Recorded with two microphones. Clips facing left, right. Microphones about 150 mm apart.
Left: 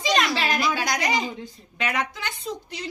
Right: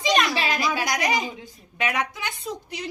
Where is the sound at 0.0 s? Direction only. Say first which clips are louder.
Right 1 dB; 15° right (ahead or behind).